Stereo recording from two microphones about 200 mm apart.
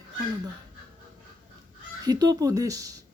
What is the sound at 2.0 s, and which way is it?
Speech, 20° right (ahead or behind).